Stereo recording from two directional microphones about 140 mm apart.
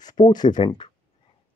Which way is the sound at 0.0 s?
30° left (ahead or behind).